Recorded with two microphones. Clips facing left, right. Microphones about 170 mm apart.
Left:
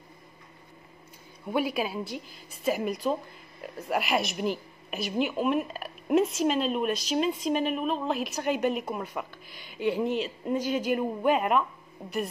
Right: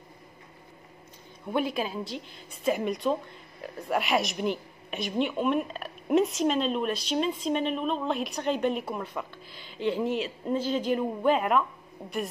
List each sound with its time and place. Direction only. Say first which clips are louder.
1.5 s a woman's voice: even; 10° left (ahead or behind)
10.0 s a woman's voice: even; centre (ahead or behind)
10.5 s a woman's voice: even; 10° left (ahead or behind)